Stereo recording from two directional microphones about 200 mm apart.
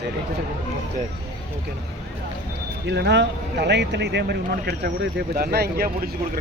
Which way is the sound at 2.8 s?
60° right (ahead or behind).